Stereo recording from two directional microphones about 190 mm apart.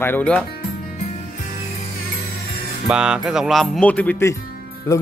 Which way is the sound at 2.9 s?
5° right (ahead or behind).